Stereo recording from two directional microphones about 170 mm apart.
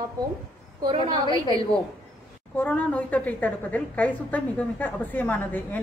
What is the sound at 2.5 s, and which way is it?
A woman's voice, 10° left (ahead or behind).